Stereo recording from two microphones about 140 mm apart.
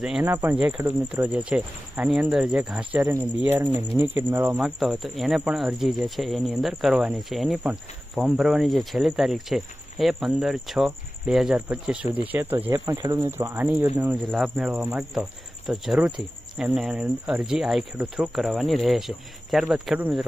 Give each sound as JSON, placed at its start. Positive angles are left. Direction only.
{"t": 0.0, "sound": "speech", "side_deg": -5}
{"t": 0.8, "sound": "speech", "side_deg": -15}
{"t": 4.4, "sound": "speech", "side_deg": -5}
{"t": 14.3, "sound": "speech", "side_deg": 0}